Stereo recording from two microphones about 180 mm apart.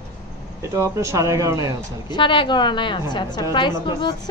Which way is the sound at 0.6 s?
15° right (ahead or behind).